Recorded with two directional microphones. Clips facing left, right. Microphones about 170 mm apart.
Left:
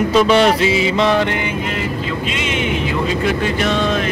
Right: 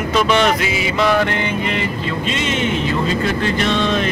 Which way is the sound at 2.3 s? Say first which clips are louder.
Right 2 dB; 10° left (ahead or behind).